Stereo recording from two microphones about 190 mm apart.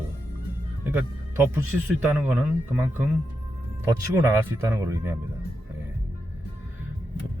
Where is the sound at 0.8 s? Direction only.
10° right (ahead or behind).